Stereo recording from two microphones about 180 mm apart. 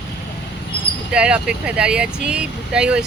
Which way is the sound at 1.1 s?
5° right (ahead or behind).